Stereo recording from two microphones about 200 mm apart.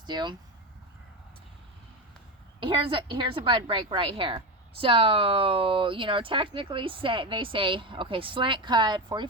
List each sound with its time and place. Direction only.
0.0 s speech: 20° right (ahead or behind)
2.6 s a woman's voice: 25° right (ahead or behind)